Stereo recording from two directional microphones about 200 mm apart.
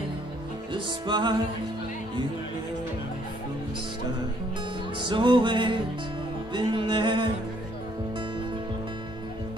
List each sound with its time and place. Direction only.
0.7 s music: 25° right (ahead or behind)
4.9 s music: 25° right (ahead or behind)